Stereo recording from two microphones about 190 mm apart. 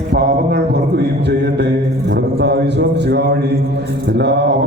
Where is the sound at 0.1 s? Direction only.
60° right (ahead or behind).